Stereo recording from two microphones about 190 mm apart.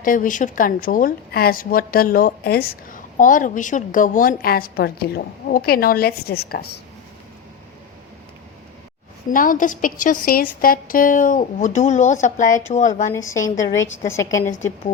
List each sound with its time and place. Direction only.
0.0 s a woman's voice: 45° left (ahead or behind)
9.3 s a woman's voice: 45° left (ahead or behind)
13.3 s a woman's voice: 15° left (ahead or behind)